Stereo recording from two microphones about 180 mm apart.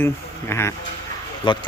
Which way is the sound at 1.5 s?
25° left (ahead or behind).